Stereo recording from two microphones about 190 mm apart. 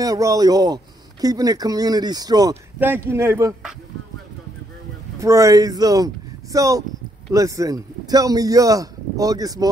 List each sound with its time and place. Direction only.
0.0 s speech: 20° right (ahead or behind)
5.2 s speech: 15° right (ahead or behind)